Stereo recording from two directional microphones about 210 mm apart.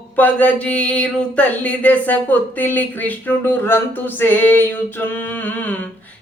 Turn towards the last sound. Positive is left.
turn(degrees=5)  # may be behind; listen again after turning